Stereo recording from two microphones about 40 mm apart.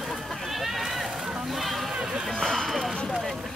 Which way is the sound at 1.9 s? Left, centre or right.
Centre.